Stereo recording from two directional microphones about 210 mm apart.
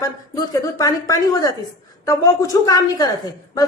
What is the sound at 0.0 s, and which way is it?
A woman's voice, 15° left (ahead or behind).